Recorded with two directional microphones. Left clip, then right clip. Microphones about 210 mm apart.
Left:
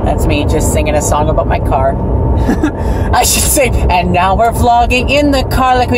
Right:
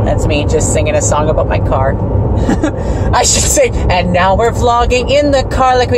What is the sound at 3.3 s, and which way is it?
Speech, 15° left (ahead or behind).